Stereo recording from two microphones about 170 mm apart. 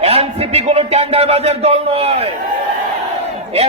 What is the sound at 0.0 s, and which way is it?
A man's voice, 35° right (ahead or behind).